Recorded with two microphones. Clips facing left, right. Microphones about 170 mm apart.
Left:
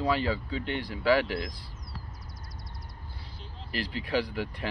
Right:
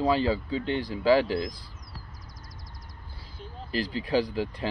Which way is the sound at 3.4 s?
45° right (ahead or behind).